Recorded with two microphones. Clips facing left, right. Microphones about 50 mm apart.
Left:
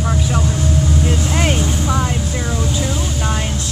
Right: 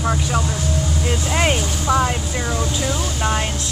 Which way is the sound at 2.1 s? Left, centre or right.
Centre.